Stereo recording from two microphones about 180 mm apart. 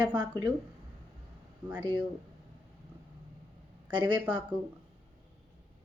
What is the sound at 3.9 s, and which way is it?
Speech, 25° right (ahead or behind).